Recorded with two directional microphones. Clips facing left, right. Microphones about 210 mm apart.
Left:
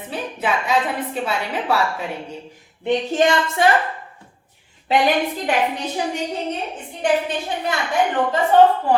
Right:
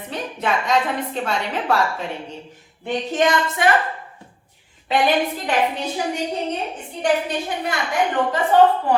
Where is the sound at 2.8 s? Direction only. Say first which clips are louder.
Left 2 dB; 30° left (ahead or behind).